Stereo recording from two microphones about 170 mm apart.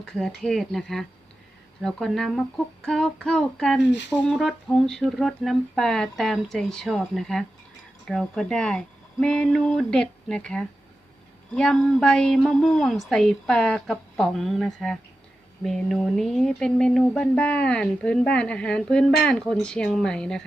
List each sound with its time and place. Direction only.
0.0 s speech: 5° left (ahead or behind)